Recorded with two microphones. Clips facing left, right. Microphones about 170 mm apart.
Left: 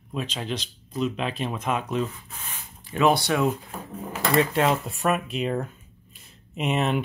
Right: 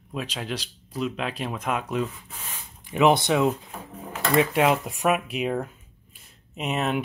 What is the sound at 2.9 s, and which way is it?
Speech, 20° right (ahead or behind).